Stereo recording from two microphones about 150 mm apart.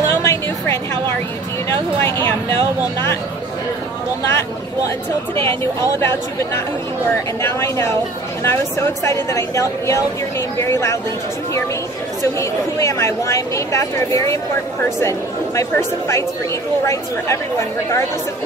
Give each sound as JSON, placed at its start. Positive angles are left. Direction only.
{"t": 0.1, "sound": "music", "side_deg": 20}
{"t": 2.0, "sound": "speech", "side_deg": 15}
{"t": 4.3, "sound": "speech", "side_deg": 20}
{"t": 7.4, "sound": "speech", "side_deg": 15}
{"t": 12.2, "sound": "speech", "side_deg": 20}
{"t": 16.8, "sound": "speech", "side_deg": 20}